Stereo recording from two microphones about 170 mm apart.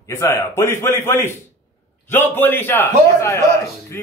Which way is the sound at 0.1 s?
15° left (ahead or behind).